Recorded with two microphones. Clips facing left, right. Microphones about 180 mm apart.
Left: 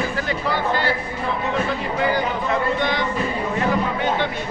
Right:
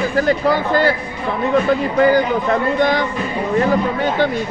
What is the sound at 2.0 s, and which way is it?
Speech, 45° right (ahead or behind).